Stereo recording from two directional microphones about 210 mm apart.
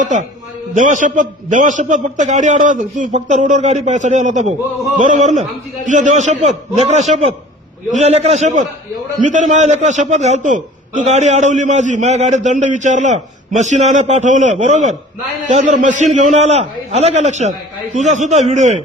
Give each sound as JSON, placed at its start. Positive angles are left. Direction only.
{"t": 0.0, "sound": "a man's voice", "side_deg": -35}